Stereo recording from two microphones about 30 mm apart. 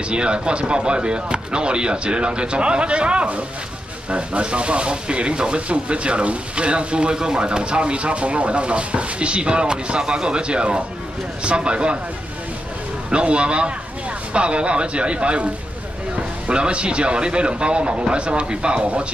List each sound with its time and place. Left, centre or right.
0.1 s speech: right
13.1 s speech: right